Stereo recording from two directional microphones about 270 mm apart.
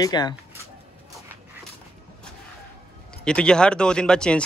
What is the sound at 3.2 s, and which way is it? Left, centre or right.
Speech, centre.